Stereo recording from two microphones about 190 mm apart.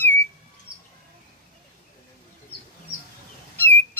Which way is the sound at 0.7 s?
50° right (ahead or behind).